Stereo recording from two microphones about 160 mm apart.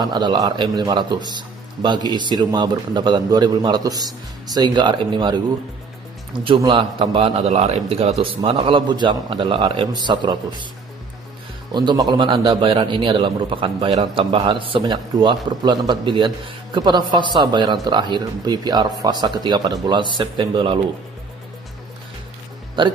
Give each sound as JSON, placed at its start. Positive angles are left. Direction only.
{"t": 0.0, "sound": "a man's voice", "side_deg": -25}
{"t": 6.4, "sound": "a man's voice", "side_deg": -30}
{"t": 11.7, "sound": "a man's voice", "side_deg": -25}